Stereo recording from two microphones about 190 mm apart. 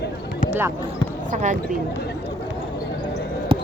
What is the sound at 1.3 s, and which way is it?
Speech, 40° right (ahead or behind).